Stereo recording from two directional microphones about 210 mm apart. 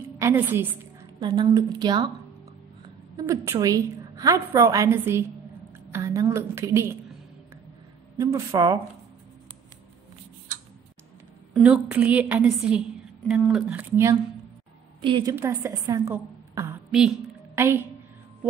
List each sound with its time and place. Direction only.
0.2 s a woman's voice: 10° right (ahead or behind)
1.2 s a woman's voice: 20° right (ahead or behind)
3.2 s a woman's voice: 15° right (ahead or behind)
8.2 s a woman's voice: 15° right (ahead or behind)
11.5 s a woman's voice: 5° right (ahead or behind)
15.0 s a woman's voice: 20° right (ahead or behind)